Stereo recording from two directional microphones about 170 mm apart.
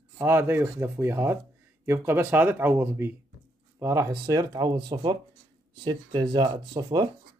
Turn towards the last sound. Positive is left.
turn(degrees=-25)  # may be behind; listen again after turning